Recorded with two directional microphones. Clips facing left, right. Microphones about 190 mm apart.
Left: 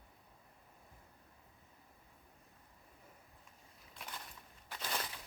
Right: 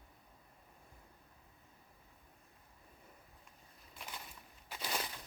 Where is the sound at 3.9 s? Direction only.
5° right (ahead or behind).